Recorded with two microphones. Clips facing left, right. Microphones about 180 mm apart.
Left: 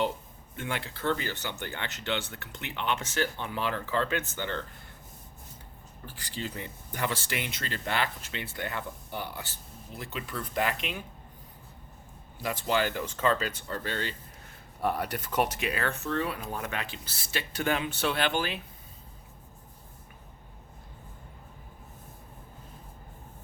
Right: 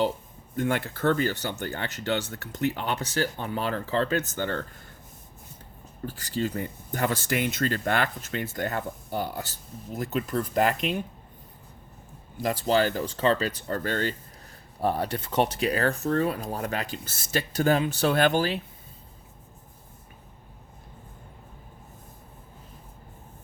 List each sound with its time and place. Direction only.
0.5 s speech: 45° right (ahead or behind)
6.1 s speech: 45° right (ahead or behind)
12.4 s speech: 40° right (ahead or behind)
14.8 s speech: 30° right (ahead or behind)